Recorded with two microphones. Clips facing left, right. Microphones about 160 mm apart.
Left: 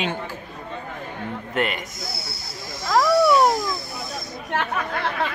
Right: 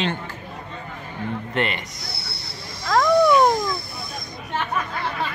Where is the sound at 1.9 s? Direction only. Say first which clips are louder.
Left 3 dB; 45° left (ahead or behind).